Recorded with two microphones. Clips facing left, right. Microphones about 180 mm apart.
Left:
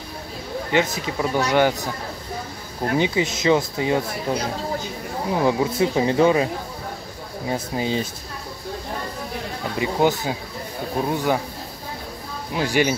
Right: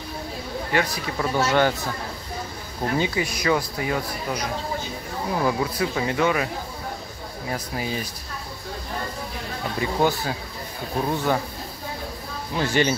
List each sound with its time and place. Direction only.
0.7 s speech: 20° left (ahead or behind)
3.0 s speech: 20° left (ahead or behind)
9.8 s speech: 15° left (ahead or behind)
12.5 s speech: 10° left (ahead or behind)